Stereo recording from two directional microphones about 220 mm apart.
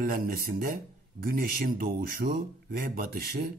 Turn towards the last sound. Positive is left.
turn(degrees=-45)  # may be behind; listen again after turning